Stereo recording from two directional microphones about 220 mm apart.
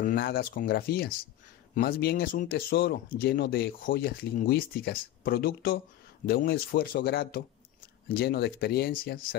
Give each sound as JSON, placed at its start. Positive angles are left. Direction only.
{"t": 0.0, "sound": "speech", "side_deg": 45}